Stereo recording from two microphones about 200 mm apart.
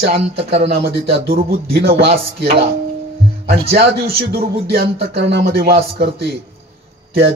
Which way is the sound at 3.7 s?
55° right (ahead or behind).